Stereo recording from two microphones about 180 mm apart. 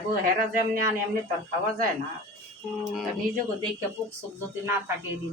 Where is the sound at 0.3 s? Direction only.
50° right (ahead or behind).